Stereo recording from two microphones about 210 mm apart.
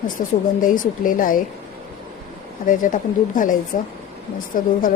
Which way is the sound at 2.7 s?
40° left (ahead or behind).